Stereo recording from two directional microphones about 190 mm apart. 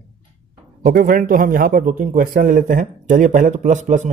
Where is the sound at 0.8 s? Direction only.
50° right (ahead or behind).